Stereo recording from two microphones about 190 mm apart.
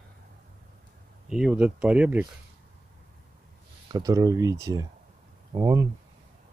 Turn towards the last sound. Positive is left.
turn(degrees=-20)  # may be behind; listen again after turning